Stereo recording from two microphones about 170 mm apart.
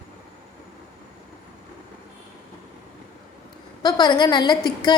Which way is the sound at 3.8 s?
25° left (ahead or behind).